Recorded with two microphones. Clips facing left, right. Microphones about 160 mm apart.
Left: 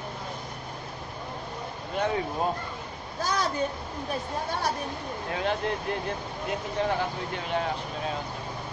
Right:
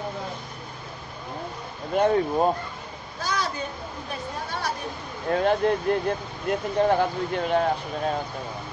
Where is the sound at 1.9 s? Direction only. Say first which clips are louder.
Right 7 dB; 45° right (ahead or behind).